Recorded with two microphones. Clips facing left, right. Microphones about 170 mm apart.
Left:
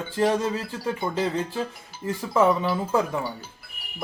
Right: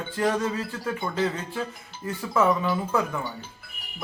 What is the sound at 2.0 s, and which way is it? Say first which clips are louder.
A man's voice: left 2 dB; 30° left (ahead or behind).